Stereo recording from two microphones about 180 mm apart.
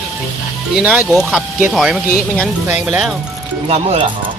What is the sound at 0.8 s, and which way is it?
Speech, 10° right (ahead or behind).